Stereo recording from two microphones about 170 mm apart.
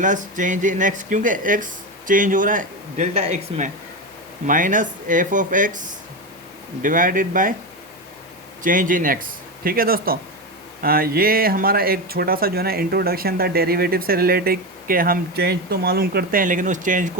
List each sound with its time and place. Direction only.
0.0 s speech: 50° right (ahead or behind)
4.4 s speech: 50° right (ahead or behind)
6.8 s speech: 50° right (ahead or behind)
8.6 s speech: 50° right (ahead or behind)